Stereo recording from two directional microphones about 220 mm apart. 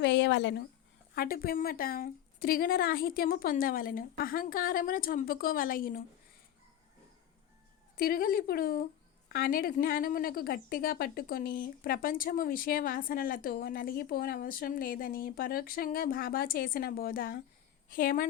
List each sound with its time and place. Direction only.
0.0 s a sound: 50° left (ahead or behind)
1.1 s a woman's voice: 40° left (ahead or behind)
7.9 s a woman's voice: 40° left (ahead or behind)